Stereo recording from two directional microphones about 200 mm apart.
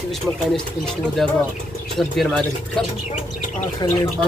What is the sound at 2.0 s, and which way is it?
Speech, centre (ahead or behind).